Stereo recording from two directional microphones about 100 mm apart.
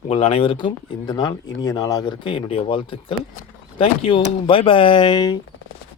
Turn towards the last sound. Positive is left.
turn(degrees=45)  # may be behind; listen again after turning